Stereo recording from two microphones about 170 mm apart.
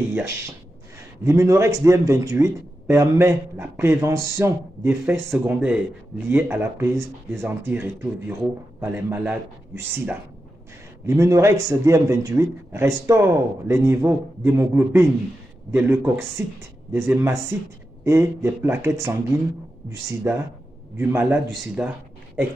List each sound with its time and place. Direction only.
0.1 s a man's voice: 15° right (ahead or behind)